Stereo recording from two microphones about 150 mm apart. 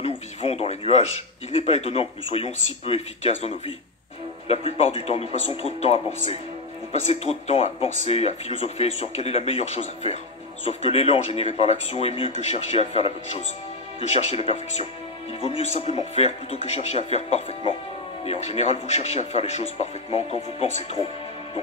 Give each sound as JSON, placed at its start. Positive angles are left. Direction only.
{"t": 0.0, "sound": "speech", "side_deg": 40}